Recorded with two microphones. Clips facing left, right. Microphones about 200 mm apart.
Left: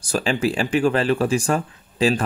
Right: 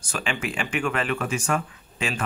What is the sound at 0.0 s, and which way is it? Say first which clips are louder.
Speech: left 8 dB; 35° left (ahead or behind).